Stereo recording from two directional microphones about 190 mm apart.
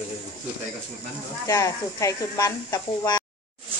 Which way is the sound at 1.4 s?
15° left (ahead or behind).